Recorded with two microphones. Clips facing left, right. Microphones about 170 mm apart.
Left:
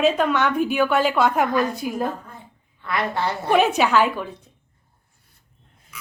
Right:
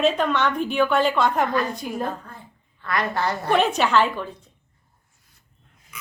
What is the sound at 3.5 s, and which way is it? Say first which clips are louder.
Speech: left 2 dB; 5° left (ahead or behind).